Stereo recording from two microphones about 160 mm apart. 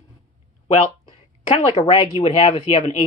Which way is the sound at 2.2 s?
35° left (ahead or behind).